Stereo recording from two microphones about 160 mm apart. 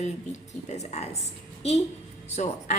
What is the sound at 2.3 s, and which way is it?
Speech, 45° left (ahead or behind).